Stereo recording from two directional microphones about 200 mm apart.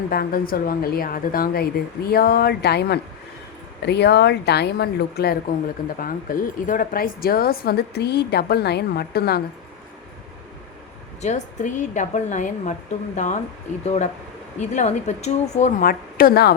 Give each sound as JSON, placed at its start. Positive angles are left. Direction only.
{"t": 0.1, "sound": "speech", "side_deg": 50}
{"t": 11.2, "sound": "a woman's voice", "side_deg": 35}